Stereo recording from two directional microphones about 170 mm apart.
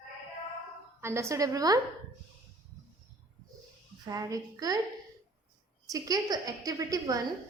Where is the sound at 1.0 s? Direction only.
15° right (ahead or behind).